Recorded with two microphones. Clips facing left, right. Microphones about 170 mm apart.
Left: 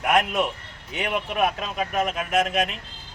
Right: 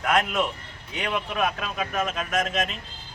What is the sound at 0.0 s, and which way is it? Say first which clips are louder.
A man's voice: left 2 dB; 15° left (ahead or behind).